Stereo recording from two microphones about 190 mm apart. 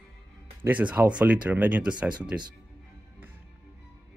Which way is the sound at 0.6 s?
10° right (ahead or behind).